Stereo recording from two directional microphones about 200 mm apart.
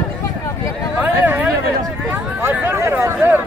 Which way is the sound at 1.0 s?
10° right (ahead or behind).